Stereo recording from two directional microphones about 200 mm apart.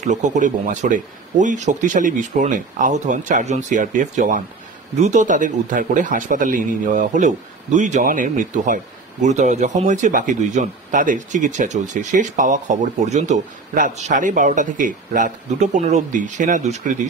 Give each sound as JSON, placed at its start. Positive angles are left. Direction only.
{"t": 0.0, "sound": "speech", "side_deg": -35}